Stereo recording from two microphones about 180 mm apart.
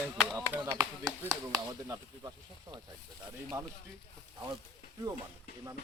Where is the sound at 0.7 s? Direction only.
20° right (ahead or behind).